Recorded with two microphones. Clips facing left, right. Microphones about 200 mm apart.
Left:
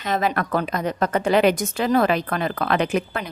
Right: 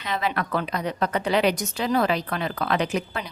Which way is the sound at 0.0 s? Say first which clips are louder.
Left 4 dB; 45° left (ahead or behind).